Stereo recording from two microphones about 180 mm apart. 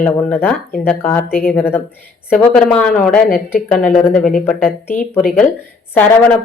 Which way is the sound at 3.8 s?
50° left (ahead or behind).